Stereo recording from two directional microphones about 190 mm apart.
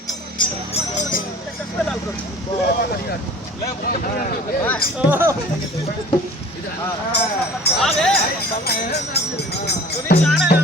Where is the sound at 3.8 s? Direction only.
50° left (ahead or behind).